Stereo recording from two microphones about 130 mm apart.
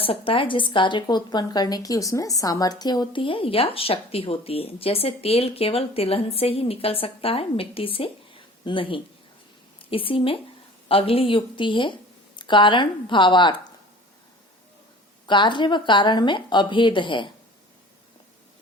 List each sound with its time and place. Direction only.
0.0 s a woman's voice: 45° left (ahead or behind)
15.3 s a woman's voice: 35° left (ahead or behind)